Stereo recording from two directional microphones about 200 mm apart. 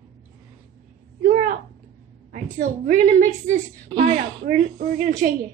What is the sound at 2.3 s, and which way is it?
A woman's voice, 40° right (ahead or behind).